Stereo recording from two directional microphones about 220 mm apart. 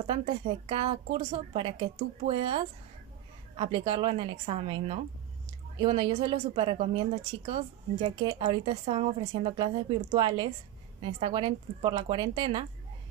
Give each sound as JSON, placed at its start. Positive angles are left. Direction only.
{"t": 0.0, "sound": "a woman's voice", "side_deg": -25}